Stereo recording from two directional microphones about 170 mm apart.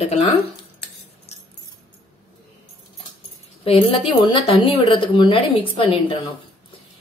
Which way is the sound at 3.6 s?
30° left (ahead or behind).